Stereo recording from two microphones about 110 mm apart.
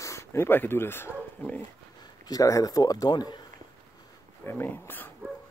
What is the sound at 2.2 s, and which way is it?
Speech, 35° left (ahead or behind).